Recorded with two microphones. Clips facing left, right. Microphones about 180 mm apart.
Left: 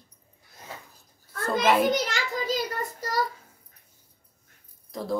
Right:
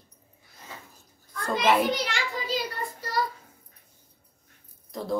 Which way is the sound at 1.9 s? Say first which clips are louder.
Left 2 dB; 45° left (ahead or behind).